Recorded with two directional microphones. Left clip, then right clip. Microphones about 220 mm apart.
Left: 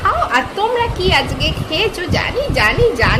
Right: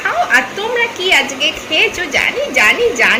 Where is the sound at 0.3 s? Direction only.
15° left (ahead or behind).